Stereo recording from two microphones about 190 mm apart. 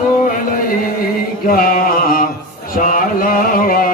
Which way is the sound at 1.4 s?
50° left (ahead or behind).